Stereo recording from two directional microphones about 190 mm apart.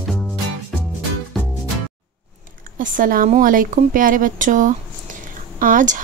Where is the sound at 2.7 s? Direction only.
45° right (ahead or behind).